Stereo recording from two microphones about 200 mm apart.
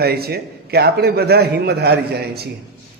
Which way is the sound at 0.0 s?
50° right (ahead or behind).